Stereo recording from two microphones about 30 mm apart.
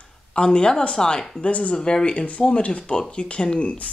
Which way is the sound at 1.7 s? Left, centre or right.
Left.